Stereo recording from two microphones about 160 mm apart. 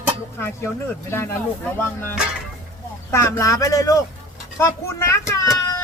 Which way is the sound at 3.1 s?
20° left (ahead or behind).